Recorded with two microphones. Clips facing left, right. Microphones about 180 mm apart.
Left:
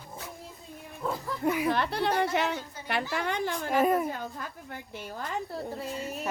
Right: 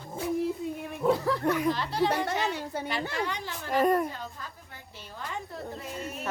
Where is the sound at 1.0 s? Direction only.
75° right (ahead or behind).